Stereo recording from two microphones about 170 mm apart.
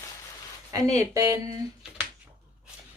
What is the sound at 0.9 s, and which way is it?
Speech, 20° right (ahead or behind).